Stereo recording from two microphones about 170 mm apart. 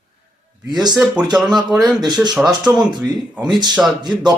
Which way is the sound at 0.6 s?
25° right (ahead or behind).